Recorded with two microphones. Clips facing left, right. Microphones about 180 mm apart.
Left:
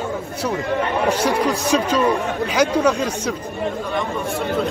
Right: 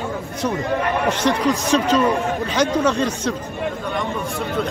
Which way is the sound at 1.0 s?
10° left (ahead or behind).